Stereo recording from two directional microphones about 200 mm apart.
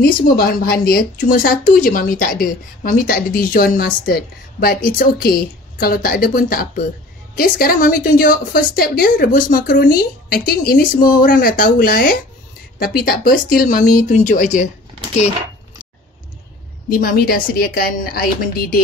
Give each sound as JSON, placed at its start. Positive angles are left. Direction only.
{"t": 0.0, "sound": "speech", "side_deg": 50}
{"t": 16.9, "sound": "speech", "side_deg": 45}